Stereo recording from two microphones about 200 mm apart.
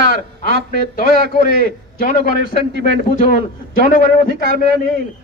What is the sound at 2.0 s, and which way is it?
A man's voice, 45° left (ahead or behind).